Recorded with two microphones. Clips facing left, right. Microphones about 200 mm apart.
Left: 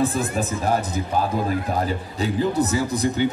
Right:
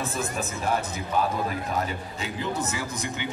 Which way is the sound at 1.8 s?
35° left (ahead or behind).